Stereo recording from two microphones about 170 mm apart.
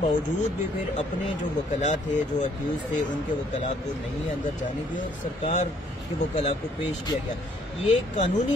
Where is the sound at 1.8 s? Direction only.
45° left (ahead or behind).